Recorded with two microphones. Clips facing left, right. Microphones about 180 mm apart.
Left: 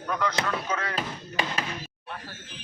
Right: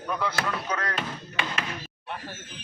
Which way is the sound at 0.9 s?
35° left (ahead or behind).